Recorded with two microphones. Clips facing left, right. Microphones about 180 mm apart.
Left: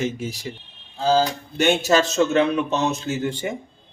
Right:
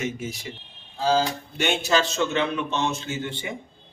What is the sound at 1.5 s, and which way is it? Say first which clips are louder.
A man's voice: left 5 dB; 45° left (ahead or behind).